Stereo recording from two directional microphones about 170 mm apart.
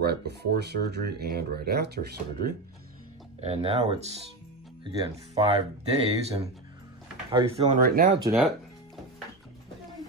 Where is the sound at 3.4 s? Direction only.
35° right (ahead or behind).